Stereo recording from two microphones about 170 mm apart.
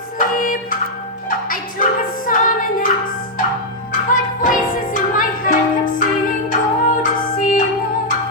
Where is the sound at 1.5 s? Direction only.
55° left (ahead or behind).